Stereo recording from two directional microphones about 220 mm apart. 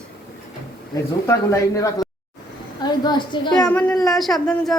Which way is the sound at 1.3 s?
15° left (ahead or behind).